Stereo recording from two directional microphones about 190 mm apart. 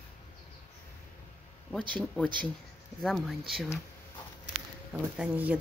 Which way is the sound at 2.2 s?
5° left (ahead or behind).